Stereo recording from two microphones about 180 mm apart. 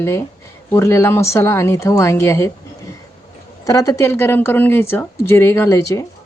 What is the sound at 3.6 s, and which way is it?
Speech, 20° left (ahead or behind).